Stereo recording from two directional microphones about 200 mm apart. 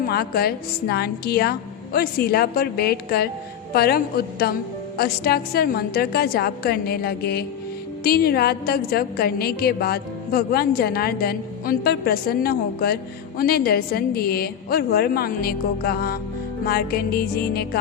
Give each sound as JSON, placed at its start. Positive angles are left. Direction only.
{"t": 0.0, "sound": "a woman's voice", "side_deg": 50}